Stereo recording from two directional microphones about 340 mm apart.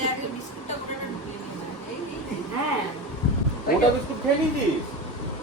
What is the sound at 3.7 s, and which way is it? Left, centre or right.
Speech, left.